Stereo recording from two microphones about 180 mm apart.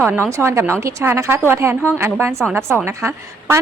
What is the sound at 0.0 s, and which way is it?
A woman's voice, 10° right (ahead or behind).